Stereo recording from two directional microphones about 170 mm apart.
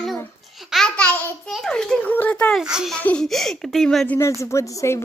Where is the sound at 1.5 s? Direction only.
5° left (ahead or behind).